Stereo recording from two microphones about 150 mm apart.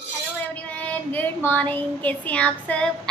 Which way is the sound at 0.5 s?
10° left (ahead or behind).